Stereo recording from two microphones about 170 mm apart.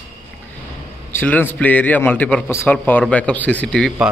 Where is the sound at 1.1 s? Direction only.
10° left (ahead or behind).